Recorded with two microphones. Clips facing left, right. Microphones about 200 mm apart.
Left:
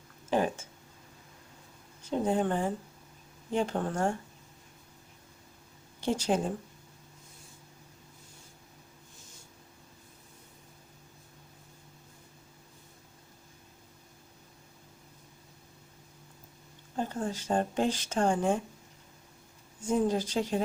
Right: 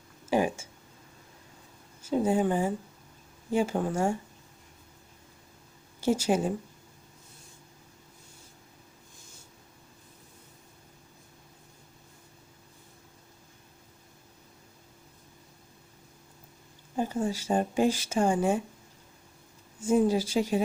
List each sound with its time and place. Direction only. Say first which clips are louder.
0.3 s speech: right 2 dB; 10° right (ahead or behind)
2.0 s speech: right 3 dB; 5° right (ahead or behind)
6.0 s speech: right 3 dB; 10° right (ahead or behind)
16.9 s speech: right 4 dB; 10° right (ahead or behind)
19.8 s speech: right 4 dB; 10° right (ahead or behind)